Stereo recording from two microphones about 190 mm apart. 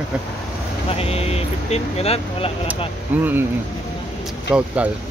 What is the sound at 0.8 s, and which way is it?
Vehicle, 30° left (ahead or behind).